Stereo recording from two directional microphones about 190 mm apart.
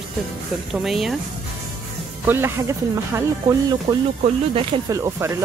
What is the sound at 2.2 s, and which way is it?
Speech, 10° right (ahead or behind).